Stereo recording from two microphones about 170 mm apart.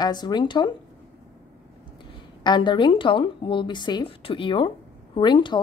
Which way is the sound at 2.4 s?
25° left (ahead or behind).